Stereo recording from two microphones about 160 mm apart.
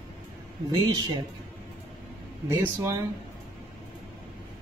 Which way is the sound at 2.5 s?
20° right (ahead or behind).